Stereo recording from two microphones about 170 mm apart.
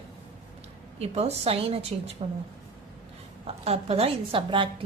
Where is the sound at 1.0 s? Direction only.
35° right (ahead or behind).